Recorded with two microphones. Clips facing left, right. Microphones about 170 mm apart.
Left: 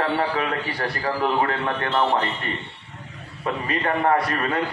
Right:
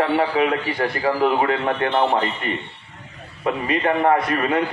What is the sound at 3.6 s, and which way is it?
Speech, 20° right (ahead or behind).